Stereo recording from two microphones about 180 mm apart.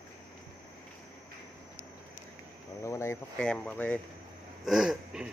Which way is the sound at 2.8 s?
15° left (ahead or behind).